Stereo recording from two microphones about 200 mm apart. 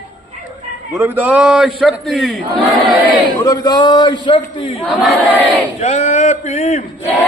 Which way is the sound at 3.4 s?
20° left (ahead or behind).